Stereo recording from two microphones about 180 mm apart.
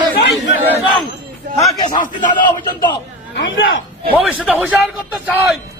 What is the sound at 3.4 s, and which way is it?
Speech, 90° left.